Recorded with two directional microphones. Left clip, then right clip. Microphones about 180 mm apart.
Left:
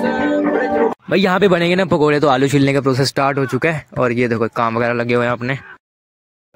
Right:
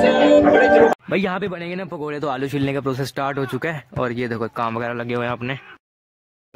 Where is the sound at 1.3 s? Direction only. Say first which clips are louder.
Left 12 dB; 40° left (ahead or behind); by 5.6 s 25° left (ahead or behind).